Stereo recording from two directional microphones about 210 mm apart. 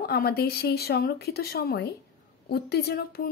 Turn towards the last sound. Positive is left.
turn(degrees=50)  # may be behind; listen again after turning